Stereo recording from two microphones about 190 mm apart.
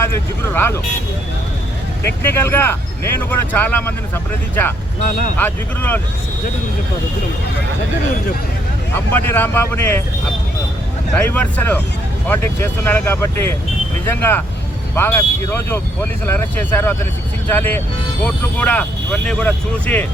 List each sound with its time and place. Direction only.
0.0 s speech: 15° left (ahead or behind)
2.2 s speech: 10° left (ahead or behind)
5.0 s speech: 50° left (ahead or behind)
5.4 s speech: 10° left (ahead or behind)
8.9 s speech: 10° left (ahead or behind)
11.1 s speech: 10° left (ahead or behind)